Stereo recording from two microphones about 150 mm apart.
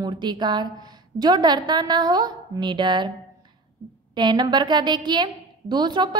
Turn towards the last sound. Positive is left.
turn(degrees=-30)  # may be behind; listen again after turning